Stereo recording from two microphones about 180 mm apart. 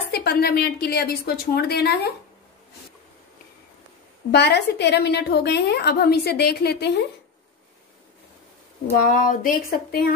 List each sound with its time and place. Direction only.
0.1 s a woman's voice: 60° left (ahead or behind)
4.3 s a woman's voice: 70° left (ahead or behind)
9.0 s a sound: 50° left (ahead or behind)